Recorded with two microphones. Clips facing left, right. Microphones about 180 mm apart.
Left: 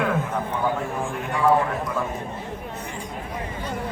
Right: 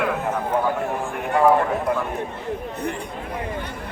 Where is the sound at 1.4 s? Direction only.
60° right (ahead or behind).